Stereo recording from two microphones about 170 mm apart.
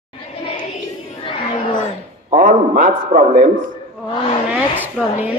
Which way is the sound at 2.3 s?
50° right (ahead or behind).